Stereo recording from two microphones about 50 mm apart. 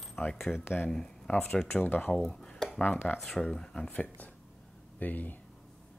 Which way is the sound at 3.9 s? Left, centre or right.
Left.